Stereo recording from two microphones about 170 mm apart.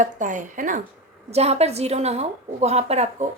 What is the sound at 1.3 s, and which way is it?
A woman's voice, 40° right (ahead or behind).